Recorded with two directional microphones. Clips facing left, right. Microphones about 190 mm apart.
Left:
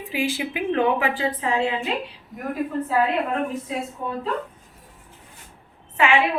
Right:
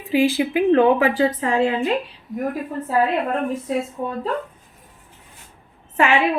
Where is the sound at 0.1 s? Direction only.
35° right (ahead or behind).